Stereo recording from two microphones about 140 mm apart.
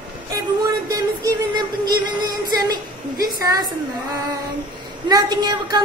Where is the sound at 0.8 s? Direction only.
25° right (ahead or behind).